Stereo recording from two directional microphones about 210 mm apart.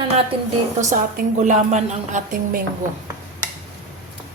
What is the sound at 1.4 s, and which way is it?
A woman's voice, 35° right (ahead or behind).